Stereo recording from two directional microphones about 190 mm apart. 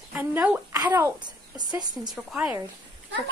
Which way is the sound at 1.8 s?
20° right (ahead or behind).